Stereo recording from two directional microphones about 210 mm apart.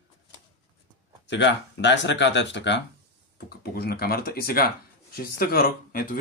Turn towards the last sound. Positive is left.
turn(degrees=45)  # may be behind; listen again after turning